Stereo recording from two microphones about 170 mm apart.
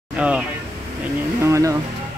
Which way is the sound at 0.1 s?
5° right (ahead or behind).